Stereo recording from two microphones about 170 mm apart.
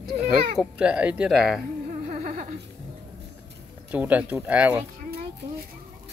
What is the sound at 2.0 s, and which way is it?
Music, 50° right (ahead or behind).